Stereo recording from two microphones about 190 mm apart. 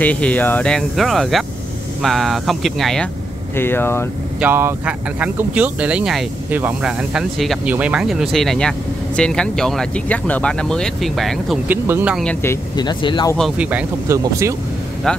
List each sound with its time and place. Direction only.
0.0 s speech: 5° left (ahead or behind)
3.5 s speech: 10° left (ahead or behind)
4.4 s speech: 10° right (ahead or behind)
12.2 s speech: 10° left (ahead or behind)
13.4 s speech: 5° right (ahead or behind)
15.1 s speech: 5° left (ahead or behind)